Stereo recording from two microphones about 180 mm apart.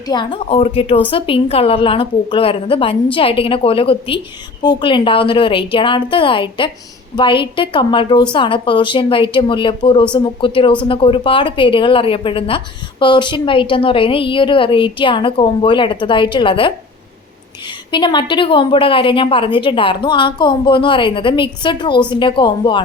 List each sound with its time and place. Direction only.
0.1 s a woman's voice: 25° left (ahead or behind)
17.9 s a woman's voice: 25° left (ahead or behind)